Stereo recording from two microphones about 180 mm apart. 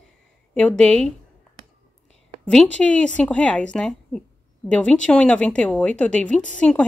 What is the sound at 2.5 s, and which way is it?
A woman's voice, 5° left (ahead or behind).